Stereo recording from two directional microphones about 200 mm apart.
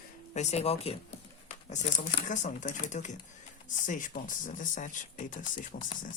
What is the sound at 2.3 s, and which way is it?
Speech, 40° left (ahead or behind).